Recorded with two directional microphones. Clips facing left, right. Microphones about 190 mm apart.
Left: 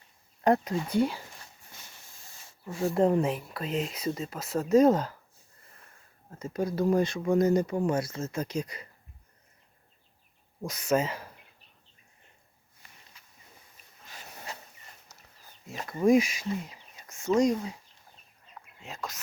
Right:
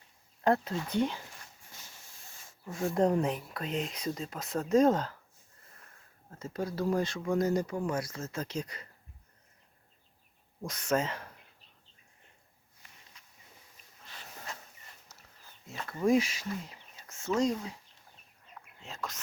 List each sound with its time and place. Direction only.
0.4 s speech: 15° left (ahead or behind)
2.7 s speech: 5° left (ahead or behind)
6.4 s speech: 15° left (ahead or behind)
10.6 s speech: 10° left (ahead or behind)
13.2 s walk: 5° left (ahead or behind)
15.1 s a sound: 15° left (ahead or behind)
15.9 s speech: 15° left (ahead or behind)
18.8 s speech: 10° left (ahead or behind)